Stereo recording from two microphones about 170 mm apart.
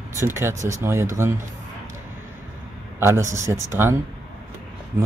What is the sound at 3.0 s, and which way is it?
A man's voice, 15° right (ahead or behind).